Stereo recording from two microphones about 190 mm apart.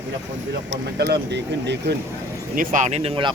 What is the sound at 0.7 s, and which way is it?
Speech, 60° right (ahead or behind).